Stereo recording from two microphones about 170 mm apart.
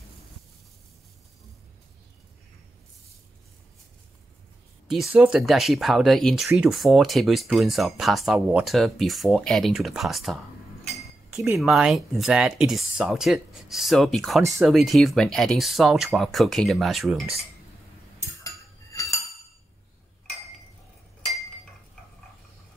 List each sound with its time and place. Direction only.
4.8 s speech: centre (ahead or behind)
18.4 s cutlery: 20° left (ahead or behind)